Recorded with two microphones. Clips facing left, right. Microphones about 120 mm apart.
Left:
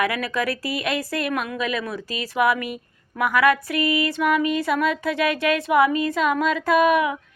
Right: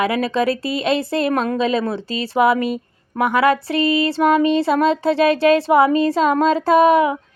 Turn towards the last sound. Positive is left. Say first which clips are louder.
# right 5 dB
turn(degrees=-30)  # may be behind; listen again after turning